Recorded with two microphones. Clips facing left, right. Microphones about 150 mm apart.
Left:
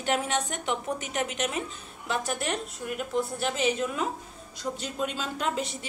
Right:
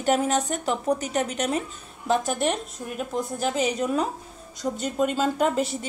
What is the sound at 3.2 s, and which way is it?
A woman's voice, 40° right (ahead or behind).